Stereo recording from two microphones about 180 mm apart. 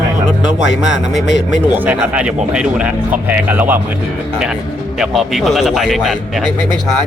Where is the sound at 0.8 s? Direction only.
Centre (ahead or behind).